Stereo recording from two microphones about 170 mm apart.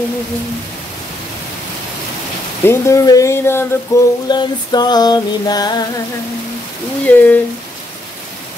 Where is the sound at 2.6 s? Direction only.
15° left (ahead or behind).